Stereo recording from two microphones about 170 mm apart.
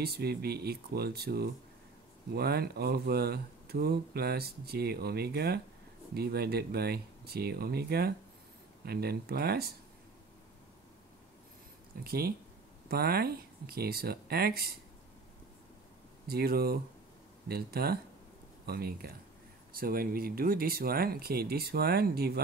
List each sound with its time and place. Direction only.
0.0 s speech: 70° right (ahead or behind)
12.0 s speech: 65° right (ahead or behind)
16.3 s speech: 65° right (ahead or behind)